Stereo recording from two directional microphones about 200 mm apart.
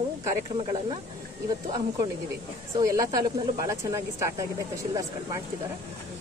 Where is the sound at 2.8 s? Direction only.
15° right (ahead or behind).